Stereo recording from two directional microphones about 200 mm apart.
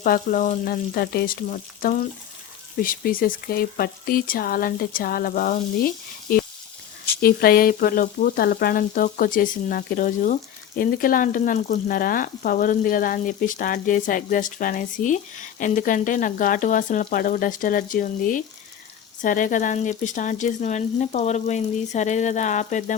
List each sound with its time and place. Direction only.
0.0 s speech: 45° left (ahead or behind)